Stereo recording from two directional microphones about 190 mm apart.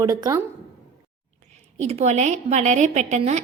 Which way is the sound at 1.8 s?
35° right (ahead or behind).